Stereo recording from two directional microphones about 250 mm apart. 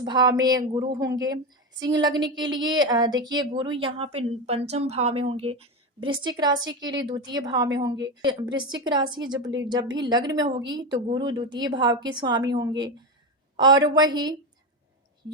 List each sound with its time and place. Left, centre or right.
0.0 s a woman's voice: centre